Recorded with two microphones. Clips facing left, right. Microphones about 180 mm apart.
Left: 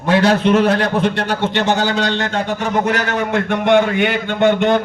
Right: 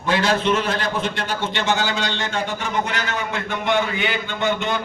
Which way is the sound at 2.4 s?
40° left (ahead or behind).